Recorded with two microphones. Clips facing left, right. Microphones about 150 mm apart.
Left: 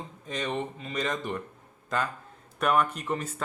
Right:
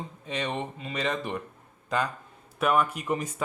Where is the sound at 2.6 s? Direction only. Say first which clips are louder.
Right 1 dB; 5° right (ahead or behind).